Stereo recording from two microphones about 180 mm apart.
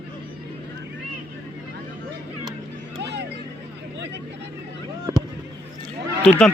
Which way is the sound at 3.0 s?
70° right (ahead or behind).